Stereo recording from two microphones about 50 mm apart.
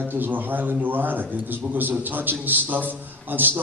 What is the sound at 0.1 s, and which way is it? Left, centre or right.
A man's voice, right.